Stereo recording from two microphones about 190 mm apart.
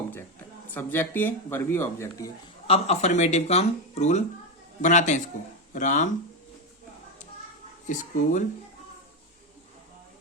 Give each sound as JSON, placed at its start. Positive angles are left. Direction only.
{"t": 0.1, "sound": "speech", "side_deg": 10}
{"t": 2.6, "sound": "speech", "side_deg": 30}
{"t": 7.9, "sound": "speech", "side_deg": 40}